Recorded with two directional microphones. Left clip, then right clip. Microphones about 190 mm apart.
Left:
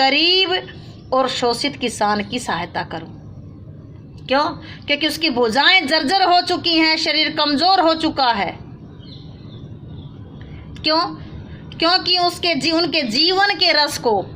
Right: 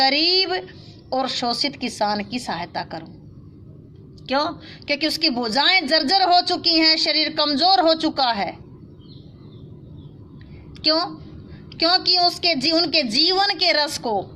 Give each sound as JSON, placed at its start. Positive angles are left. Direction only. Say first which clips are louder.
{"t": 0.0, "sound": "a sound", "louder": "left 3 dB", "side_deg": -35}
{"t": 1.1, "sound": "a woman's voice", "louder": "left 5 dB", "side_deg": -30}
{"t": 4.3, "sound": "a woman's voice", "louder": "left 4 dB", "side_deg": -30}
{"t": 11.8, "sound": "a woman's voice", "louder": "left 1 dB", "side_deg": -30}